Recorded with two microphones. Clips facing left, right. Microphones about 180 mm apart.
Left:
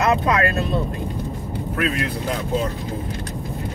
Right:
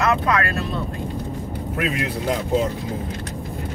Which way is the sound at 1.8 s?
15° right (ahead or behind).